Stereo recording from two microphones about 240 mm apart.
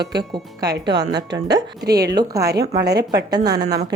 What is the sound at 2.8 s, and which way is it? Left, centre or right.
Speech, right.